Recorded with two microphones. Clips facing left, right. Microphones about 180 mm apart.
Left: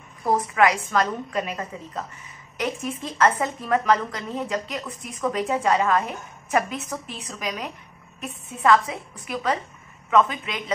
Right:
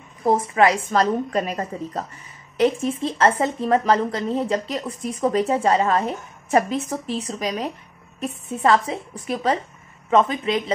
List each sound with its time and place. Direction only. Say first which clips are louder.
0.2 s a woman's voice: right 3 dB; 25° right (ahead or behind)